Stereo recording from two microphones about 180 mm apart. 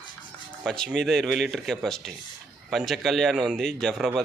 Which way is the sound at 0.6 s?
5° left (ahead or behind).